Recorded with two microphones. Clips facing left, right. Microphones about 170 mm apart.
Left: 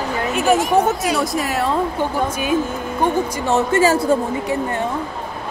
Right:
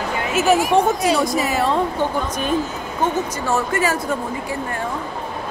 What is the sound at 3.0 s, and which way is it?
Speech, 20° left (ahead or behind).